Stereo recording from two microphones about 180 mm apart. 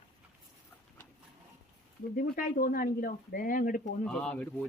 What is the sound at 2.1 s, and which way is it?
Speech, 50° left (ahead or behind).